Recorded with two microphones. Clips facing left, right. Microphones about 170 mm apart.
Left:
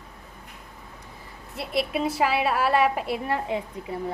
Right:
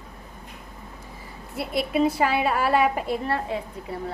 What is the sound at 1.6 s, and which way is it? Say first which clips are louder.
A woman's voice: right 3 dB; centre (ahead or behind).